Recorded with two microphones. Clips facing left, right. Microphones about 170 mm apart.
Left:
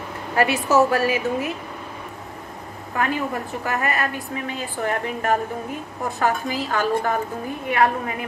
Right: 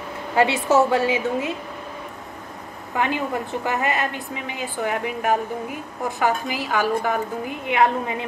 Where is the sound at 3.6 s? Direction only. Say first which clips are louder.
Left 1 dB; 20° right (ahead or behind).